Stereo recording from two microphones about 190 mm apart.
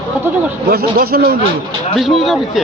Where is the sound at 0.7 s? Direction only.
55° right (ahead or behind).